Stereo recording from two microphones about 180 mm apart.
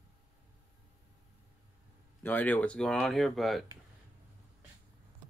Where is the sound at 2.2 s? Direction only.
10° left (ahead or behind).